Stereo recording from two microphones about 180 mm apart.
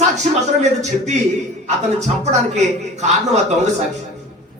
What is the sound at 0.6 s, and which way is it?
Speech, 40° right (ahead or behind).